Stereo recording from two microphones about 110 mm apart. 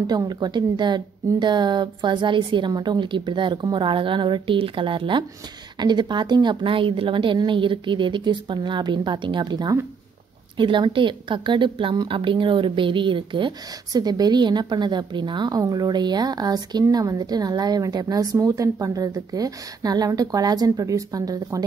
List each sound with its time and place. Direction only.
0.0 s a woman's voice: 40° right (ahead or behind)